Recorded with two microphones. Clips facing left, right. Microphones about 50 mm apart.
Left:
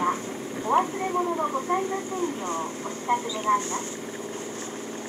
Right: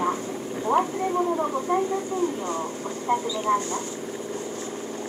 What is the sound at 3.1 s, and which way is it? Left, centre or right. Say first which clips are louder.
Speech: even; left.